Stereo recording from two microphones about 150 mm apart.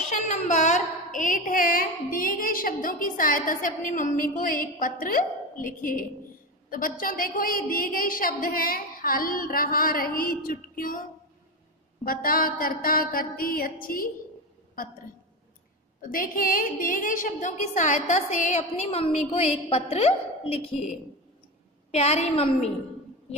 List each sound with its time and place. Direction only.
0.1 s a woman's voice: 55° left (ahead or behind)
12.0 s a woman's voice: 75° left (ahead or behind)
16.0 s a woman's voice: 70° left (ahead or behind); by 20.9 s 40° left (ahead or behind)
21.9 s a woman's voice: 45° left (ahead or behind)